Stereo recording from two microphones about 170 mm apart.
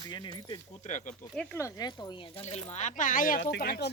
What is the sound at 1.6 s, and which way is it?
Speech, 20° left (ahead or behind).